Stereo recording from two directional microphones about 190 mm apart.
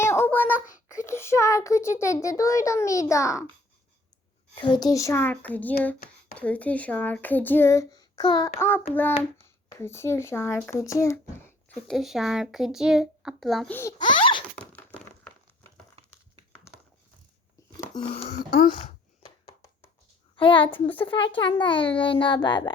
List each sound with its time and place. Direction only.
0.0 s child singing: 15° left (ahead or behind)
0.9 s a child's voice: 15° left (ahead or behind)
4.5 s a child's voice: 25° left (ahead or behind)
11.9 s speech: centre (ahead or behind)
14.1 s a sound: 25° left (ahead or behind)
14.5 s thunk: 5° left (ahead or behind)
17.6 s a sound: 15° left (ahead or behind)
17.9 s a child's voice: 30° left (ahead or behind)
18.3 s speech: 50° left (ahead or behind)
19.2 s a sound: 20° left (ahead or behind)
20.3 s a child's voice: 25° left (ahead or behind)